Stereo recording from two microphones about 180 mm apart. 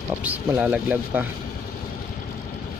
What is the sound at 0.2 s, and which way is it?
Speech, 10° right (ahead or behind).